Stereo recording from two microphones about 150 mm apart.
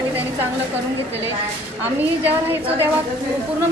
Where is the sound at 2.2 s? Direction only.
15° right (ahead or behind).